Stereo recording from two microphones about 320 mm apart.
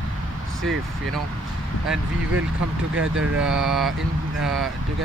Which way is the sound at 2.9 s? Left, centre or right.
Right.